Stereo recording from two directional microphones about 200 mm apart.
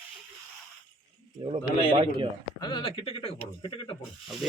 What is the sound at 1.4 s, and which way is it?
Speech, 25° right (ahead or behind).